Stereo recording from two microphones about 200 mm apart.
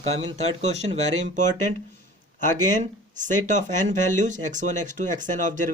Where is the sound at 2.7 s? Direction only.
40° right (ahead or behind).